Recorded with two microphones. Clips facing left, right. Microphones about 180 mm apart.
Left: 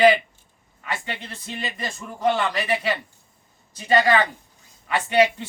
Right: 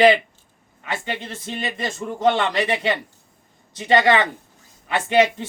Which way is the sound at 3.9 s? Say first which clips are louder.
Right 2 dB; 25° right (ahead or behind).